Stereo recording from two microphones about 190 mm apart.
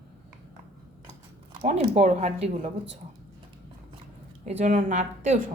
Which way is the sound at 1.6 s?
35° right (ahead or behind).